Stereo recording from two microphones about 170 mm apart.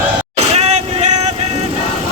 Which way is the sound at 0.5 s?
40° right (ahead or behind).